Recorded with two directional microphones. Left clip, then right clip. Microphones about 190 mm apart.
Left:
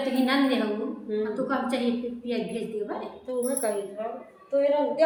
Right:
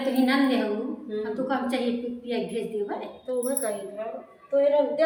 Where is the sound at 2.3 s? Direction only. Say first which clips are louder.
Right 2 dB; 15° right (ahead or behind).